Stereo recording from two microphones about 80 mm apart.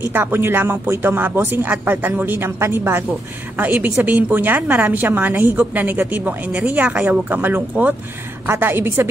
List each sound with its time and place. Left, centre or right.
0.1 s speech: right